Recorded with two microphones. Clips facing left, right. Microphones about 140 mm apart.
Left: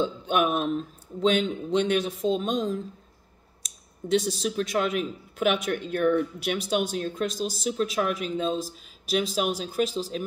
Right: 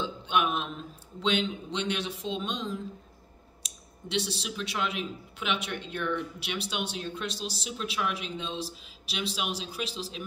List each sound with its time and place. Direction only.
0.0 s speech: 45° left (ahead or behind)